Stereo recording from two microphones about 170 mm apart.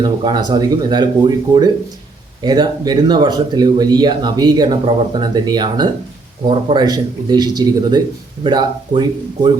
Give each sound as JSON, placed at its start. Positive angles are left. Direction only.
{"t": 0.0, "sound": "speech", "side_deg": -25}